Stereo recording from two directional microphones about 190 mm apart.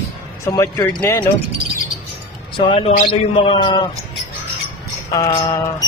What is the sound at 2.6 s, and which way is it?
A man's voice, 30° left (ahead or behind).